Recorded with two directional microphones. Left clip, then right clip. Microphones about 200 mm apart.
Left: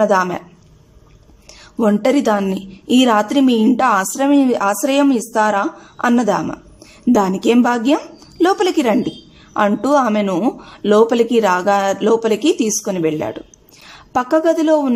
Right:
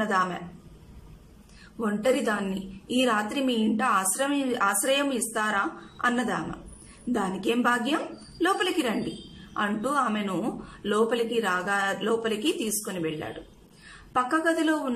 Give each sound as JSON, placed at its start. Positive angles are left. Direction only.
{"t": 0.0, "sound": "speech", "side_deg": 35}
{"t": 1.8, "sound": "a woman's voice", "side_deg": 40}